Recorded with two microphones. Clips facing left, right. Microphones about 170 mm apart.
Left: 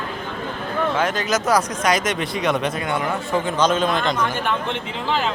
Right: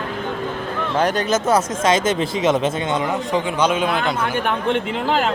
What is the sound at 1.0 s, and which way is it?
Speech, 30° right (ahead or behind).